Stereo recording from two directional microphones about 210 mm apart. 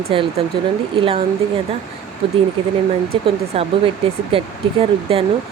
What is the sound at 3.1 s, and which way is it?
Speech, 30° right (ahead or behind).